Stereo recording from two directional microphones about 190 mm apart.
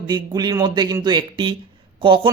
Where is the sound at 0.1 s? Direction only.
20° right (ahead or behind).